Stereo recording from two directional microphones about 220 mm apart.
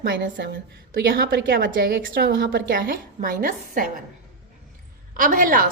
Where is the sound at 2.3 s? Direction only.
55° right (ahead or behind).